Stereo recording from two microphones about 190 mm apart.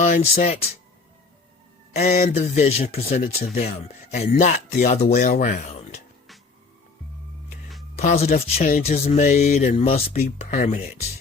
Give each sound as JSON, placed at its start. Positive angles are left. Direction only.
{"t": 0.0, "sound": "speech", "side_deg": 35}
{"t": 2.0, "sound": "speech", "side_deg": 40}
{"t": 7.9, "sound": "speech", "side_deg": 35}